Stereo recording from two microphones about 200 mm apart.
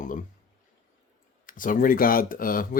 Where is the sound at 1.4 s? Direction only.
40° left (ahead or behind).